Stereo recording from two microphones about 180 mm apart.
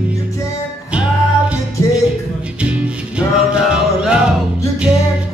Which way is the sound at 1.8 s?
15° left (ahead or behind).